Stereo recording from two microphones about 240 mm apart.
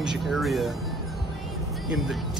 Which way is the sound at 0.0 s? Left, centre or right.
Centre.